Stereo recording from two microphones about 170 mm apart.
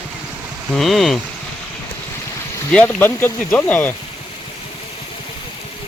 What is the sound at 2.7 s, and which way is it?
Speech, 10° left (ahead or behind).